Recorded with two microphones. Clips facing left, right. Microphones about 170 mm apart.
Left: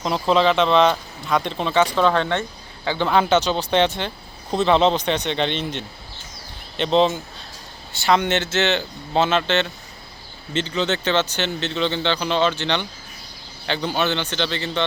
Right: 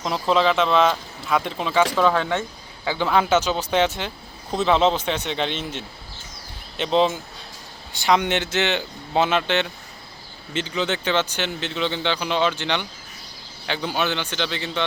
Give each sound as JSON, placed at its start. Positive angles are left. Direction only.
{"t": 0.0, "sound": "speech", "side_deg": 0}